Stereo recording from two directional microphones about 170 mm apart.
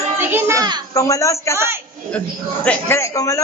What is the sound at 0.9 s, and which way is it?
Speech, 20° left (ahead or behind).